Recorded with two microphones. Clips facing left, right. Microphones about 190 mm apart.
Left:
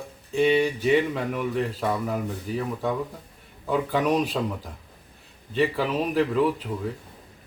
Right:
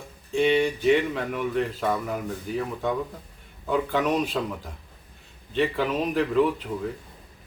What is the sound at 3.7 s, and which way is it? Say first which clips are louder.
Speech: left 1 dB; 10° left (ahead or behind).